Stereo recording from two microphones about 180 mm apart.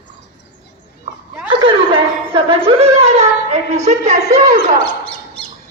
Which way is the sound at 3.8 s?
40° right (ahead or behind).